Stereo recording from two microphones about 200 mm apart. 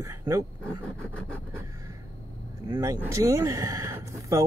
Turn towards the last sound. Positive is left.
turn(degrees=-15)  # may be behind; listen again after turning